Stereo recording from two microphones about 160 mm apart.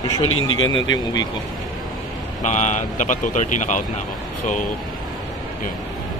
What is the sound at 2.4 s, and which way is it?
Speech, 50° left (ahead or behind).